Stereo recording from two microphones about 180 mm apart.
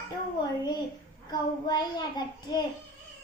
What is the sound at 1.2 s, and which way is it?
A child's voice, 25° left (ahead or behind).